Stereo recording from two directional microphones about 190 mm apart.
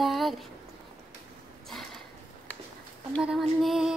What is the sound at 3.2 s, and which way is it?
Female singing, centre (ahead or behind).